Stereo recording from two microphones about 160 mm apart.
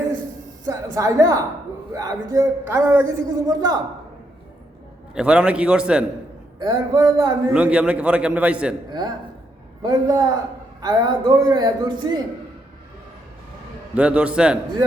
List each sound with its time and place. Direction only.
0.6 s a man's voice: 20° right (ahead or behind)
5.1 s a man's voice: 5° right (ahead or behind)
6.6 s a man's voice: 25° right (ahead or behind)
7.5 s a man's voice: 5° right (ahead or behind)
8.9 s a man's voice: 25° right (ahead or behind)
13.9 s a man's voice: 10° right (ahead or behind)